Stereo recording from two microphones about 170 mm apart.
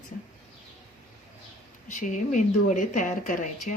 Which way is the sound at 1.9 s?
50° left (ahead or behind).